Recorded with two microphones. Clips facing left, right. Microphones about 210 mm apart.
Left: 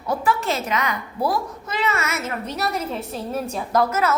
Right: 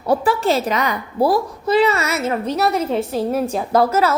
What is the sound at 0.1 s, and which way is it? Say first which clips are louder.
A woman's voice: right 6 dB; 30° right (ahead or behind).